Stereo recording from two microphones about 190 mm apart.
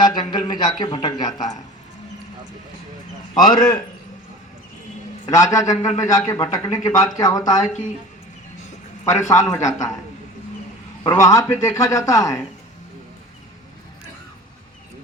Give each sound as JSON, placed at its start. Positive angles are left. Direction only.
{"t": 0.0, "sound": "a sound", "side_deg": 20}
{"t": 1.3, "sound": "speech", "side_deg": 40}
{"t": 3.3, "sound": "speech", "side_deg": 20}
{"t": 5.2, "sound": "a man's voice", "side_deg": 20}
{"t": 9.0, "sound": "a man's voice", "side_deg": 15}
{"t": 11.0, "sound": "a man's voice", "side_deg": 20}